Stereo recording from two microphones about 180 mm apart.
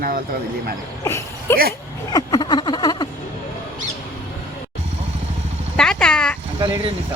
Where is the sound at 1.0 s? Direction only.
15° left (ahead or behind).